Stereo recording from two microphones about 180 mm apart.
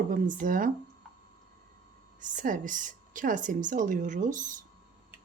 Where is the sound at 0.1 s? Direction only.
50° right (ahead or behind).